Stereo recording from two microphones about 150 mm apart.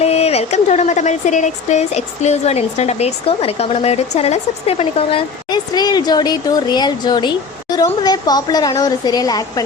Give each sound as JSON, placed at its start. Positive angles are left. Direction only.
{"t": 0.0, "sound": "speech", "side_deg": 45}
{"t": 5.5, "sound": "speech", "side_deg": 25}